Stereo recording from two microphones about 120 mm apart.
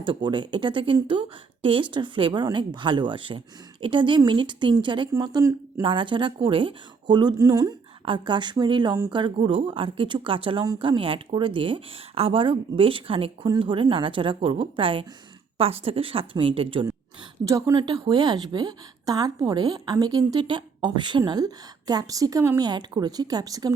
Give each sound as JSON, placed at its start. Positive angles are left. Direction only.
{"t": 0.0, "sound": "a woman's voice", "side_deg": -40}
{"t": 5.8, "sound": "a woman's voice", "side_deg": -45}
{"t": 8.0, "sound": "a woman's voice", "side_deg": -40}
{"t": 17.4, "sound": "speech", "side_deg": -25}
{"t": 17.7, "sound": "a woman's voice", "side_deg": -40}